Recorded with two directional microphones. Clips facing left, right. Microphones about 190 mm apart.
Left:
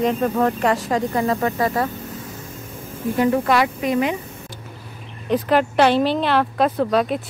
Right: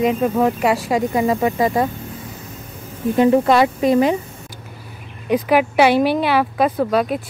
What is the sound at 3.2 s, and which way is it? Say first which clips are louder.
Speech: right 5 dB; 25° right (ahead or behind).